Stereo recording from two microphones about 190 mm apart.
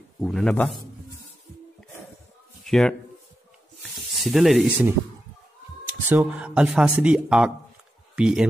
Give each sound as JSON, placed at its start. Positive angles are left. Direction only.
{"t": 0.2, "sound": "speech", "side_deg": 5}
{"t": 2.6, "sound": "speech", "side_deg": 0}
{"t": 3.8, "sound": "rub", "side_deg": 0}
{"t": 6.0, "sound": "speech", "side_deg": -10}